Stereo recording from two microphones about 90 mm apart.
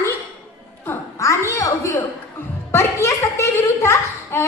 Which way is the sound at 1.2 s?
30° left (ahead or behind).